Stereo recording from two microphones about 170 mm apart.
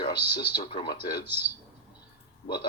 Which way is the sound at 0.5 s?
30° left (ahead or behind).